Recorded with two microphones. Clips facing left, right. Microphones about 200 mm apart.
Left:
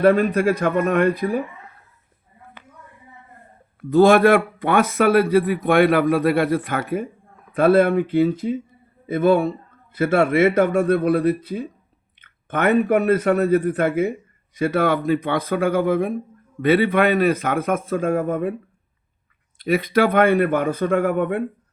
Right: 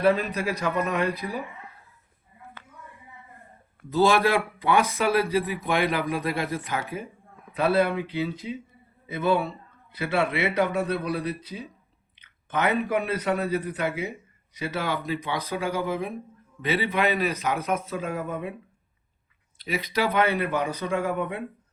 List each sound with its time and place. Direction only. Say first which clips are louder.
0.0 s speech: left 7 dB; 50° left (ahead or behind)
3.8 s speech: left 8 dB; 55° left (ahead or behind)
19.5 s speech: left 9 dB; 55° left (ahead or behind)